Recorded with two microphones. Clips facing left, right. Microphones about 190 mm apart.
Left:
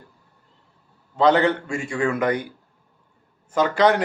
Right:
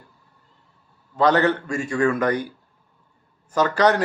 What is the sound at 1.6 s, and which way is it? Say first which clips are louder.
Speech: right 2 dB; 25° left (ahead or behind).